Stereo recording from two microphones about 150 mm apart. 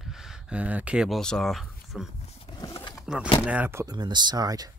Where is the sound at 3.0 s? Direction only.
5° right (ahead or behind); by 4.7 s 25° right (ahead or behind).